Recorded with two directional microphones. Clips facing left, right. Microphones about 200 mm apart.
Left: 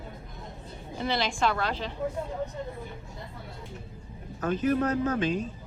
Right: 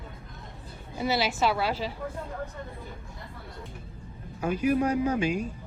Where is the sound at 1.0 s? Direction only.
5° right (ahead or behind).